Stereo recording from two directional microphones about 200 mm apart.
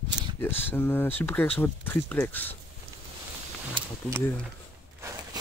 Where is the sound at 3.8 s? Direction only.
25° right (ahead or behind).